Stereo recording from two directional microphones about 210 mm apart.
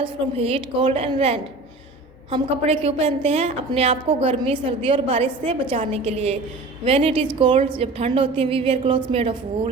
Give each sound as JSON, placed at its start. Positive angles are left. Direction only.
{"t": 0.0, "sound": "a woman's voice", "side_deg": -25}